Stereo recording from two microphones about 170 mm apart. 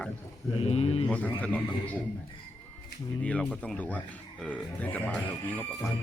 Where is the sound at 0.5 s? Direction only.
35° left (ahead or behind).